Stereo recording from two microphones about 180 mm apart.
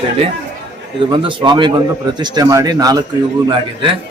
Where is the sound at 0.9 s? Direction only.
30° right (ahead or behind).